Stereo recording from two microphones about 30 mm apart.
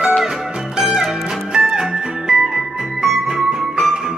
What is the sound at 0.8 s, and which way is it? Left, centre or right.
Music, centre.